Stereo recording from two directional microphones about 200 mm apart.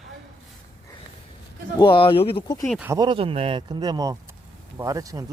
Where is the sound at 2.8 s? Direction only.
20° right (ahead or behind).